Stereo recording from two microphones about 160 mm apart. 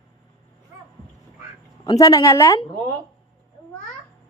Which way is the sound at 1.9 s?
20° left (ahead or behind).